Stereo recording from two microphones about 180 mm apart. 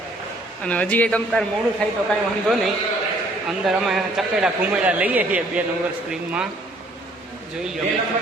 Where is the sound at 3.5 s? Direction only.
Centre (ahead or behind).